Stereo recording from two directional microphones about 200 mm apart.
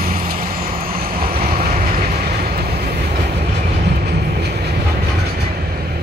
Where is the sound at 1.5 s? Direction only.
40° right (ahead or behind).